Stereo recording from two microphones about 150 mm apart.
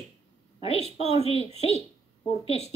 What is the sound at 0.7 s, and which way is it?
A woman's voice, 40° left (ahead or behind).